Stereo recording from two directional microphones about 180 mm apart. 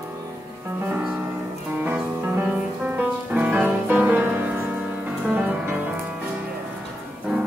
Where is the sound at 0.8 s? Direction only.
10° right (ahead or behind).